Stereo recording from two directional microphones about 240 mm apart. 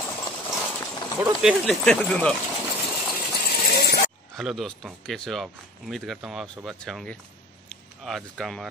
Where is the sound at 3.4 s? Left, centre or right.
Left.